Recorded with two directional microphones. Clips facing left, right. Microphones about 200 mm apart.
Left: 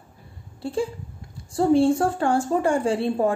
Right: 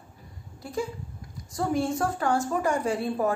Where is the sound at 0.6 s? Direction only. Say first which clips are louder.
Left 5 dB; 30° left (ahead or behind).